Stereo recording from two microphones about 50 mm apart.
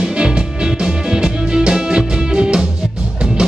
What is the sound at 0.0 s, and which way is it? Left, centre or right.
Music, centre.